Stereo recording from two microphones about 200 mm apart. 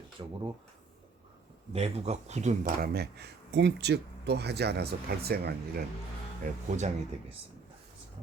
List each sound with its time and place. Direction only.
0.2 s speech: 25° right (ahead or behind)
1.7 s speech: 30° right (ahead or behind); by 5.8 s 50° right (ahead or behind)
6.4 s speech: 35° right (ahead or behind)